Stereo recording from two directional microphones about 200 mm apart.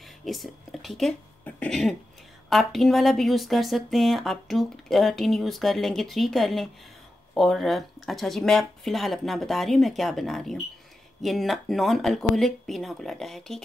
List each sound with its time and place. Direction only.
0.2 s a woman's voice: centre (ahead or behind)